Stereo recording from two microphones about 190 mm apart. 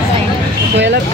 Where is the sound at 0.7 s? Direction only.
65° right (ahead or behind).